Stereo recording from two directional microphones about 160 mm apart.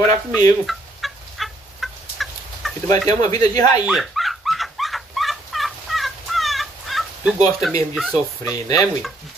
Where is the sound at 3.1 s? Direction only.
25° left (ahead or behind).